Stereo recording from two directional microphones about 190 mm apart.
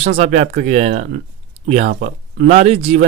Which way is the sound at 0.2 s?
40° right (ahead or behind).